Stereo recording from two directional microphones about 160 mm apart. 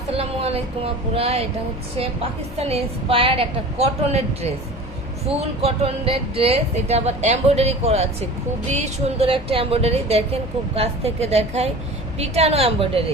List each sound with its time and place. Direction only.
0.1 s a sound: 40° right (ahead or behind)
1.1 s a woman's voice: 40° right (ahead or behind)
2.6 s a woman's voice: 40° right (ahead or behind)
5.3 s a woman's voice: 35° right (ahead or behind)